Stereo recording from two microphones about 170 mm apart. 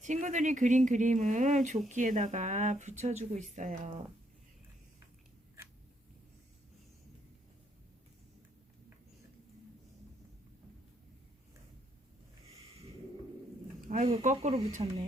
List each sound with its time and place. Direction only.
0.0 s speech: 45° right (ahead or behind)
12.5 s a sound: 35° right (ahead or behind)
13.9 s speech: 35° right (ahead or behind)